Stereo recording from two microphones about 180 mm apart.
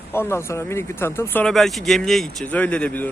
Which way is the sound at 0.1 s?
15° left (ahead or behind).